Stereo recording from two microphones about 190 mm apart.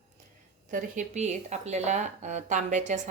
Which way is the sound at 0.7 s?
40° right (ahead or behind).